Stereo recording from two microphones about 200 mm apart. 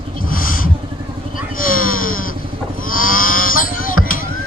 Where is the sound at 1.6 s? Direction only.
45° left (ahead or behind).